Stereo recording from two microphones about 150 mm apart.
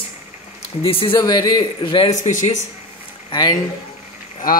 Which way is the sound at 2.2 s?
55° left (ahead or behind).